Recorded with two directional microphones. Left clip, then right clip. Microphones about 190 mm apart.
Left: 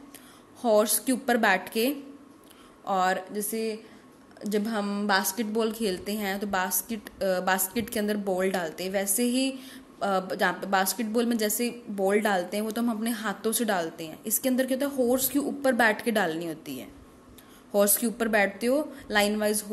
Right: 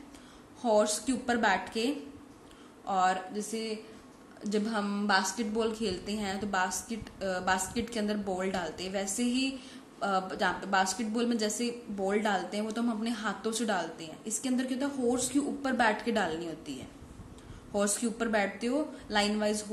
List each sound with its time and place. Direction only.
0.6 s a woman's voice: 45° left (ahead or behind)